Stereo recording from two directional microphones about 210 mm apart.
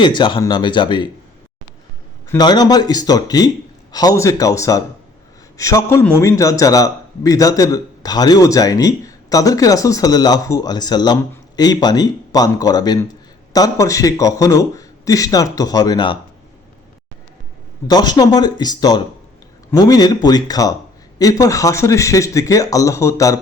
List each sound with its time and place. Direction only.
0.0 s speech: 20° left (ahead or behind)
2.3 s a man's voice: 20° left (ahead or behind)
17.8 s a man's voice: 20° left (ahead or behind)